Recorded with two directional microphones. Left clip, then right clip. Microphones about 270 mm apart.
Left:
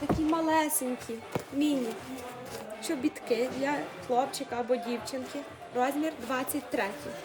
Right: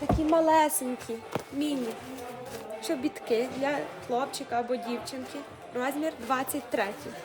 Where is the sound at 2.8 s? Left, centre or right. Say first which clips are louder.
Right 1 dB; centre.